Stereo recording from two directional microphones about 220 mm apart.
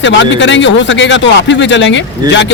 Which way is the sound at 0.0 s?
55° left (ahead or behind).